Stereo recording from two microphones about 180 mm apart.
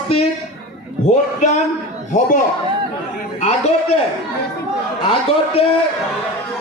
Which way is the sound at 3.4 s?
35° left (ahead or behind).